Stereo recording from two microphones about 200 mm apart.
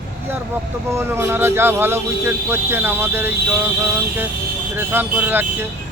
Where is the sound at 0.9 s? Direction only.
10° right (ahead or behind).